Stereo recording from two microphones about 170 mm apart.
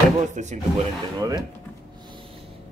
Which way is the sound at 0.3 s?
45° right (ahead or behind).